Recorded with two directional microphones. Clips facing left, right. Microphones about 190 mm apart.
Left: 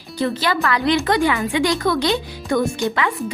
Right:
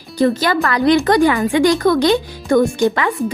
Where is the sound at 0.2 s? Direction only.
45° right (ahead or behind).